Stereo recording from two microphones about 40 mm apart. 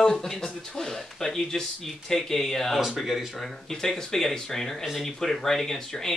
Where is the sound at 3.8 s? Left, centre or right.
Centre.